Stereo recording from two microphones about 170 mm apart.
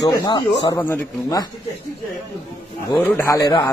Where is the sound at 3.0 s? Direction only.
15° left (ahead or behind).